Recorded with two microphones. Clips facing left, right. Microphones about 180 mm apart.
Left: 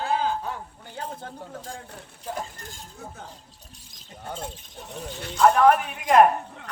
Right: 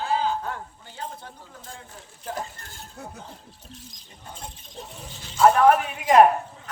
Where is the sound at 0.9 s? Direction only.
60° left (ahead or behind).